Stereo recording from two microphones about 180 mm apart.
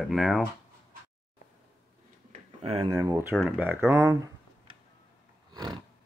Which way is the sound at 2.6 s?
30° right (ahead or behind).